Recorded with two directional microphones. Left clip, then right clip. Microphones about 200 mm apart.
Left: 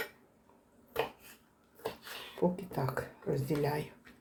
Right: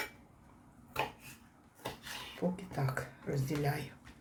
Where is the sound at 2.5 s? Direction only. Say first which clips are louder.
Left 3 dB; 25° left (ahead or behind).